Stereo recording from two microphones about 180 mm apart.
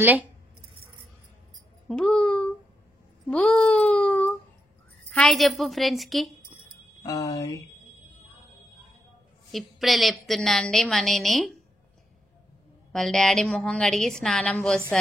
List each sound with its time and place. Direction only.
1.9 s speech: 5° left (ahead or behind)
3.3 s a sound: 5° left (ahead or behind)
5.1 s a woman's voice: centre (ahead or behind)
7.0 s speech: 20° left (ahead or behind)
9.5 s a woman's voice: centre (ahead or behind)
12.9 s a woman's voice: centre (ahead or behind)